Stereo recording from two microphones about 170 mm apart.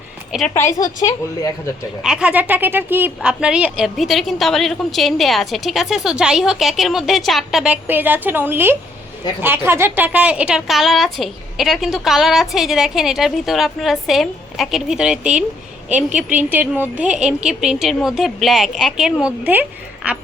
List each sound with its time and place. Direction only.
0.3 s a woman's voice: centre (ahead or behind)
0.5 s a woman's voice: 20° left (ahead or behind)
2.0 s a woman's voice: 5° right (ahead or behind)